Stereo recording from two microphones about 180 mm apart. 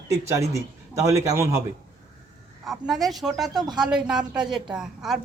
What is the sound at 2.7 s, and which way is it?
Speech, centre (ahead or behind).